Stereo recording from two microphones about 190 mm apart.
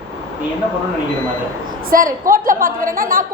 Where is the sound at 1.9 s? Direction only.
45° right (ahead or behind).